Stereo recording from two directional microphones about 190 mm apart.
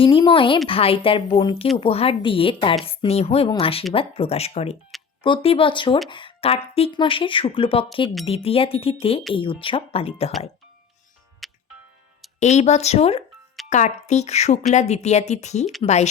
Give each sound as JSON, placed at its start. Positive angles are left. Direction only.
{"t": 0.0, "sound": "a woman's voice", "side_deg": 25}
{"t": 11.4, "sound": "music", "side_deg": 0}
{"t": 12.4, "sound": "a woman's voice", "side_deg": 35}